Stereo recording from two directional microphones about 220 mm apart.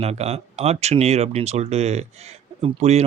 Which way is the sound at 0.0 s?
30° right (ahead or behind).